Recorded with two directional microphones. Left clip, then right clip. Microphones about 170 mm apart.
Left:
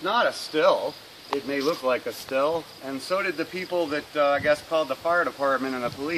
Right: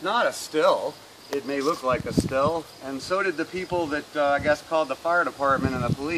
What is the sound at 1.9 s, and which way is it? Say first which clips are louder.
Speech: right 1 dB; 25° left (ahead or behind).